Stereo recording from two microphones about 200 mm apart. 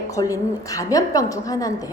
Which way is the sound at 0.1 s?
15° left (ahead or behind).